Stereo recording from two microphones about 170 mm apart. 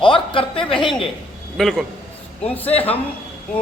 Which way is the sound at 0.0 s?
30° left (ahead or behind).